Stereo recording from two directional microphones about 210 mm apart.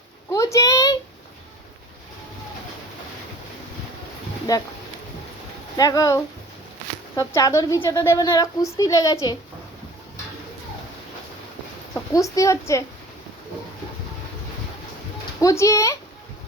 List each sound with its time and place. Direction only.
0.3 s a sound: 15° left (ahead or behind)
4.5 s a woman's voice: 15° left (ahead or behind)
5.7 s a woman's voice: 15° left (ahead or behind)
11.9 s a woman's voice: 15° left (ahead or behind)
15.4 s a woman's voice: 15° left (ahead or behind)